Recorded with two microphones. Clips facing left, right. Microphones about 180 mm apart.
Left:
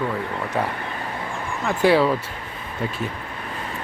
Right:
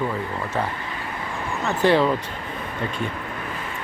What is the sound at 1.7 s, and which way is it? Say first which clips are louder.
Speech: left 1 dB; 10° left (ahead or behind).